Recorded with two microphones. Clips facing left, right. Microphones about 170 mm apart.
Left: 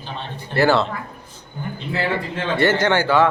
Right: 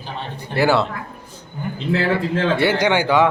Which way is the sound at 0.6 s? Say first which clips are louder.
Even; 10° right (ahead or behind).